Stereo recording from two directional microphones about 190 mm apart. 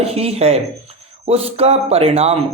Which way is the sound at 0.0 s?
30° right (ahead or behind).